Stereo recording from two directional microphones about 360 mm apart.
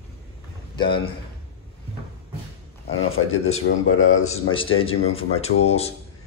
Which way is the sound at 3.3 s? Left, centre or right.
Left.